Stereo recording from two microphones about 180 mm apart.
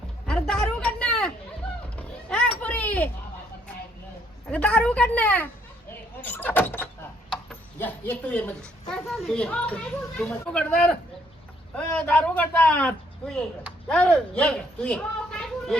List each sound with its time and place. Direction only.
0.3 s a sound: 5° left (ahead or behind)
4.5 s speech: 5° left (ahead or behind)
5.9 s door: 10° left (ahead or behind)
7.8 s speech: 10° left (ahead or behind)